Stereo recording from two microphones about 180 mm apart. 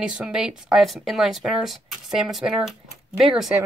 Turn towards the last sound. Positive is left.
turn(degrees=0)  # may be behind; listen again after turning